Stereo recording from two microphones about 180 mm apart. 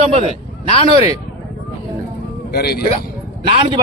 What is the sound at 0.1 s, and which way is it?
Speech, 35° right (ahead or behind).